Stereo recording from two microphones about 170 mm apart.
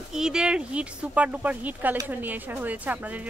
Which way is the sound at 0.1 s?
5° right (ahead or behind).